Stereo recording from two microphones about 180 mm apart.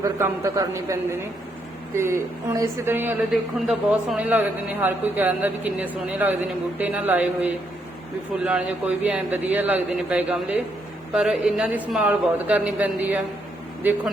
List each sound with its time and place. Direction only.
0.0 s speech: 15° right (ahead or behind)
2.0 s speech: 15° right (ahead or behind)